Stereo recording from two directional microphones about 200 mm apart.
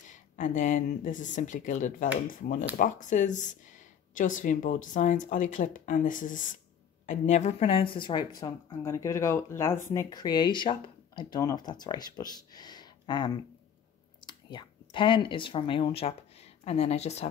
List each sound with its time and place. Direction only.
0.1 s speech: 40° left (ahead or behind)